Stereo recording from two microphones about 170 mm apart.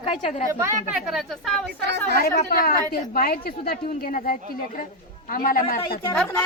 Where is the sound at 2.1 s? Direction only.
60° left (ahead or behind).